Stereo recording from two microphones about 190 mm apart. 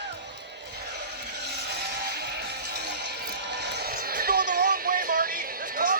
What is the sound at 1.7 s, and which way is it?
Music, 60° right (ahead or behind).